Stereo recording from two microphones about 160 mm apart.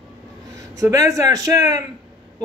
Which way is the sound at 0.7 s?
20° right (ahead or behind).